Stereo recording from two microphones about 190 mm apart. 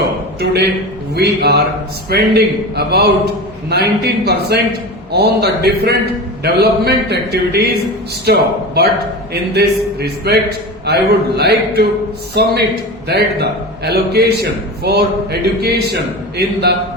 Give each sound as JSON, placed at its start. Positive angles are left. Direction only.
{"t": 0.3, "sound": "a man's voice", "side_deg": -60}